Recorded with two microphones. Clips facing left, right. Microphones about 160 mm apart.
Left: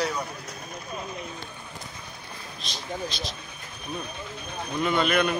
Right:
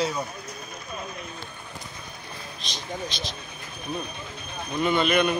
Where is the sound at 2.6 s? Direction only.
Centre (ahead or behind).